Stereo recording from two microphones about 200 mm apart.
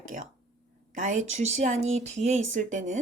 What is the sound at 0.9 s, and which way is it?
Speech, 40° right (ahead or behind).